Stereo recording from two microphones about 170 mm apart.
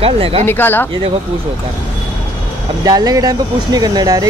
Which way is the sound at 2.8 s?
20° right (ahead or behind).